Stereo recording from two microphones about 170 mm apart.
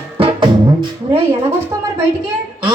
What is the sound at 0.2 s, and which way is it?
Music, 30° right (ahead or behind).